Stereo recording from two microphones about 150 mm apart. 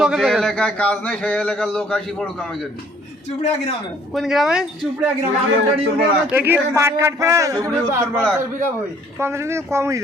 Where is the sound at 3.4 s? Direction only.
45° left (ahead or behind).